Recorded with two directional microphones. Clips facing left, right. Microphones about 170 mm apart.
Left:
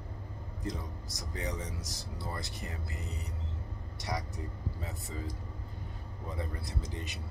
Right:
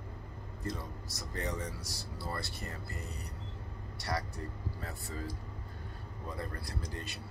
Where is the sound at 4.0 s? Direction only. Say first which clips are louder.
Right 1 dB; 15° left (ahead or behind).